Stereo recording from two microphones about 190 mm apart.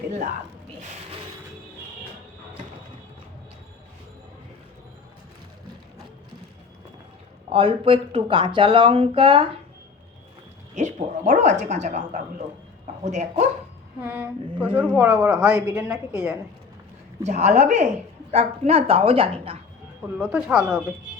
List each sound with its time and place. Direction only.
7.5 s speech: 25° right (ahead or behind)
10.8 s speech: 40° right (ahead or behind)
14.0 s a woman's voice: 10° right (ahead or behind)
17.2 s speech: 35° right (ahead or behind)
20.1 s speech: 5° right (ahead or behind)